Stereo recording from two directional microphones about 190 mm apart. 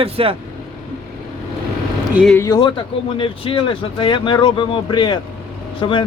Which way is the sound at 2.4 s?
20° left (ahead or behind).